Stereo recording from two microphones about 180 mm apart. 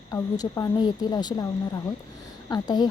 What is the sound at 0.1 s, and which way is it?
A woman's voice, 20° left (ahead or behind).